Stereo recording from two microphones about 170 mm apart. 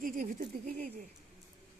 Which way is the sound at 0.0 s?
55° right (ahead or behind).